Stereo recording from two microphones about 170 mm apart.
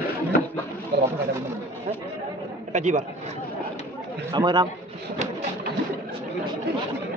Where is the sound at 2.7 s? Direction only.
45° right (ahead or behind).